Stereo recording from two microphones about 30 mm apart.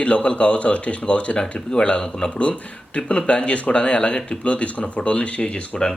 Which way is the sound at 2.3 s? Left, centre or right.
Left.